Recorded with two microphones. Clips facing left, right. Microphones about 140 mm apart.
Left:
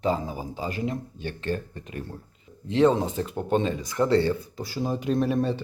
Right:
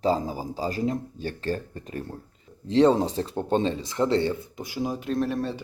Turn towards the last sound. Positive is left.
turn(degrees=0)  # may be behind; listen again after turning